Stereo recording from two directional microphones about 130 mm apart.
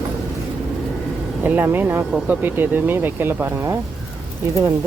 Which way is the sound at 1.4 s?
15° right (ahead or behind).